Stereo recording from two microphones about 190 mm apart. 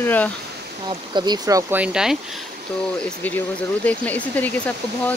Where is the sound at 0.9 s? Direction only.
25° right (ahead or behind).